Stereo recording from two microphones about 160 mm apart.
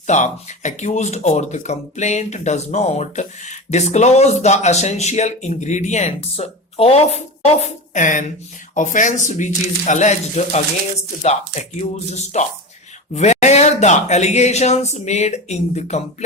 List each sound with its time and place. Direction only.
0.1 s speech: 45° left (ahead or behind)
7.6 s a woman's voice: 50° left (ahead or behind)